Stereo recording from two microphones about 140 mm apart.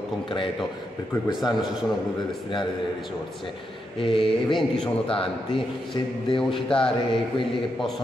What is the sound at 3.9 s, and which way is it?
A man's voice, 40° left (ahead or behind).